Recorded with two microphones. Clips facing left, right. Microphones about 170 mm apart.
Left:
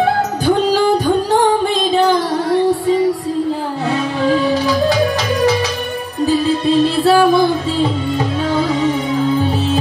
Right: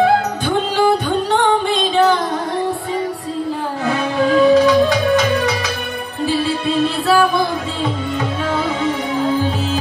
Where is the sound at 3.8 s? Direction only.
35° left (ahead or behind).